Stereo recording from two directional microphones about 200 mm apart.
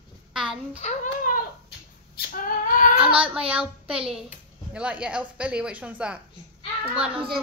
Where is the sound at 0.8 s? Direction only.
35° left (ahead or behind).